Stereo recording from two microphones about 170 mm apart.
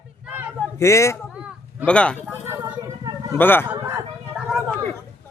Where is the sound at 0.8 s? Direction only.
15° left (ahead or behind).